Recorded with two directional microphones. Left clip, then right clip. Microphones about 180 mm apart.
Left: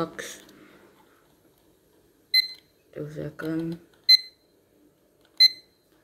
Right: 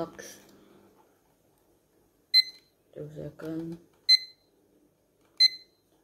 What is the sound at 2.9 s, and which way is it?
Speech, 25° left (ahead or behind).